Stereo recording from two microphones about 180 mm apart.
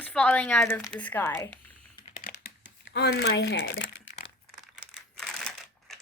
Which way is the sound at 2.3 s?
70° left (ahead or behind).